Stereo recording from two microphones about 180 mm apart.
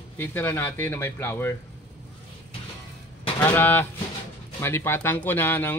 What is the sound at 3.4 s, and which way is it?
Speech, 10° left (ahead or behind).